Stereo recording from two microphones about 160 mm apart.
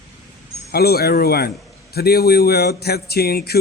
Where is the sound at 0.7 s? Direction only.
75° left (ahead or behind).